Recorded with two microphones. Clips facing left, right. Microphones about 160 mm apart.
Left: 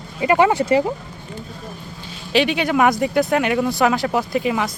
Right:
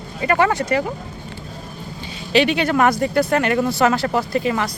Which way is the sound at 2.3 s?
5° left (ahead or behind).